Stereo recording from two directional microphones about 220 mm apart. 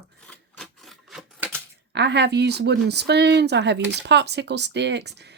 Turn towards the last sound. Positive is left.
turn(degrees=-50)  # may be behind; listen again after turning